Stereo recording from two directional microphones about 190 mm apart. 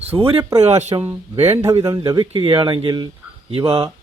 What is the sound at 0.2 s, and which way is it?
Speech, 30° right (ahead or behind).